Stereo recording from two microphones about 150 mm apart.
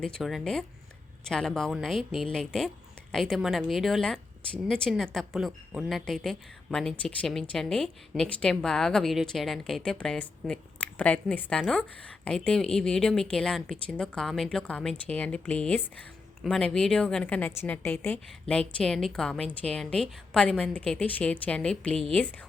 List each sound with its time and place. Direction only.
0.0 s a woman's voice: centre (ahead or behind)